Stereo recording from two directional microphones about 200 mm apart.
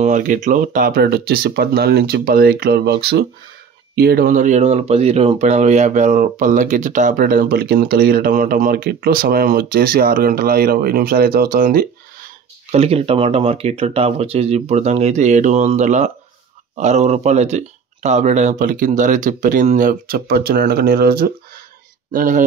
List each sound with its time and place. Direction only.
0.0 s speech: 40° right (ahead or behind)
12.7 s speech: 30° right (ahead or behind)